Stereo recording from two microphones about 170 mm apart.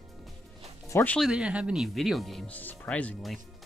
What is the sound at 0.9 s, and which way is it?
Speech, 10° left (ahead or behind).